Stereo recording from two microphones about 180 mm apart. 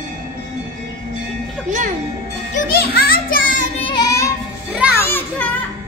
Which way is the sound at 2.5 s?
55° left (ahead or behind).